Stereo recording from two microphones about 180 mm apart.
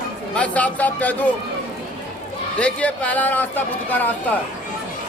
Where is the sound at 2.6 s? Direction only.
5° left (ahead or behind).